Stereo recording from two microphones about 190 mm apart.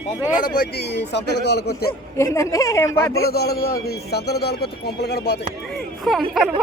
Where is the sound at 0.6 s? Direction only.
60° left (ahead or behind).